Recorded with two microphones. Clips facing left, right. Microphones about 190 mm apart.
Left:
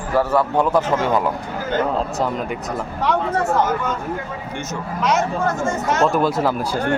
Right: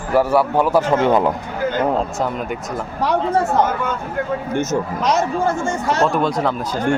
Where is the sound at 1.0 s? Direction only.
25° right (ahead or behind).